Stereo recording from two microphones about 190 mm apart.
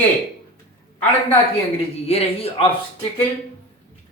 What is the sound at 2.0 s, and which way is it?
Speech, 30° left (ahead or behind).